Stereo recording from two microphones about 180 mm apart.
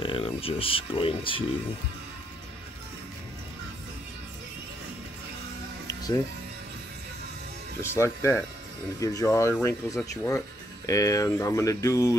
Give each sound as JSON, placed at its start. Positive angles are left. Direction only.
{"t": 0.0, "sound": "speech", "side_deg": 30}
{"t": 5.9, "sound": "music", "side_deg": 20}
{"t": 8.0, "sound": "speech", "side_deg": 10}